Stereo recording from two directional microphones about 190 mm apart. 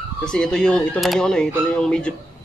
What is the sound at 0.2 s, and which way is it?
Speech, 5° left (ahead or behind).